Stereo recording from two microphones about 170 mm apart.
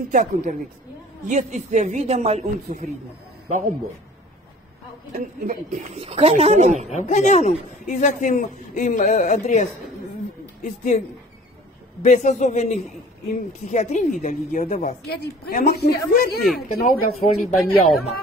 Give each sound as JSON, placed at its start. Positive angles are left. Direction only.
{"t": 0.1, "sound": "a man's voice", "side_deg": -50}
{"t": 5.5, "sound": "a woman's voice", "side_deg": -45}
{"t": 7.0, "sound": "a man's voice", "side_deg": 45}
{"t": 12.0, "sound": "a man's voice", "side_deg": 45}
{"t": 15.0, "sound": "a woman's voice", "side_deg": 60}
{"t": 17.1, "sound": "speech", "side_deg": 0}